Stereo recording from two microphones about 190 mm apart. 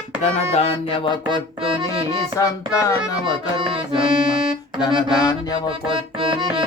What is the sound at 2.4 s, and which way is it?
Music, 15° left (ahead or behind).